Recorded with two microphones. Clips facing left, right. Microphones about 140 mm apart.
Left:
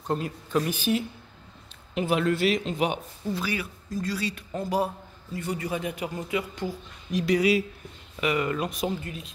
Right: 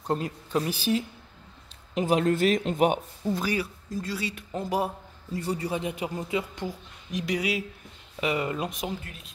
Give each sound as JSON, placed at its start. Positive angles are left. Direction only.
{"t": 0.5, "sound": "speech", "side_deg": -30}
{"t": 3.9, "sound": "a man's voice", "side_deg": -25}
{"t": 5.3, "sound": "a man's voice", "side_deg": -35}
{"t": 8.2, "sound": "a man's voice", "side_deg": -25}